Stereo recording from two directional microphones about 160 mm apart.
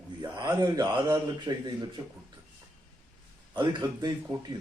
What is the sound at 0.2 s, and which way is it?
A man's voice, 25° right (ahead or behind).